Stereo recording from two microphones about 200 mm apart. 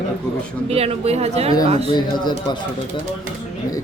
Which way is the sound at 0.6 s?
30° right (ahead or behind).